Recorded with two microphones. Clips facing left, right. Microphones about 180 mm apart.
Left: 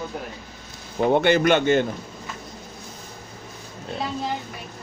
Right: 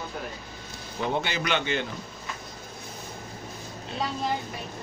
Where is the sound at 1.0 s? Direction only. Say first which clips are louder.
Left 11 dB; 55° left (ahead or behind).